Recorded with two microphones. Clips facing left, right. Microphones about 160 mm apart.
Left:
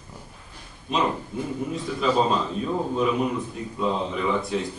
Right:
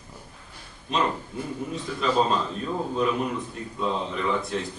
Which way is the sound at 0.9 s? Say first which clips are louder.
Left 1 dB; 5° left (ahead or behind).